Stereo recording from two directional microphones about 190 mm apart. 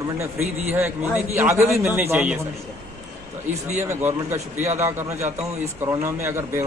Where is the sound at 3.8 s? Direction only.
15° right (ahead or behind).